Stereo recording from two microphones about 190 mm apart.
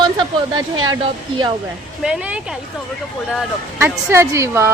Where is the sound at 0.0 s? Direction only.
25° right (ahead or behind).